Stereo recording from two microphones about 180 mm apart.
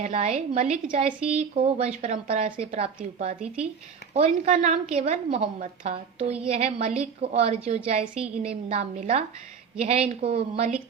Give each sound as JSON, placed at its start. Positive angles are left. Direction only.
{"t": 0.0, "sound": "a woman's voice", "side_deg": -35}
{"t": 3.4, "sound": "speech", "side_deg": -5}
{"t": 4.1, "sound": "a woman's voice", "side_deg": -40}